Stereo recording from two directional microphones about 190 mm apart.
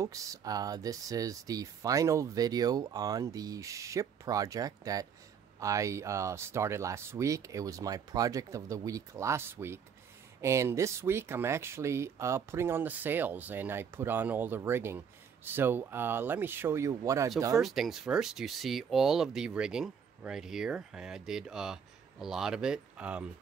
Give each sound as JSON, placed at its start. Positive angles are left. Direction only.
{"t": 0.0, "sound": "speech", "side_deg": -15}
{"t": 17.6, "sound": "speech", "side_deg": 0}